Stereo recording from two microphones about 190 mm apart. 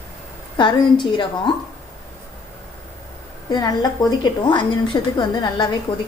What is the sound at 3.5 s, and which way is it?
A woman's voice, 20° left (ahead or behind).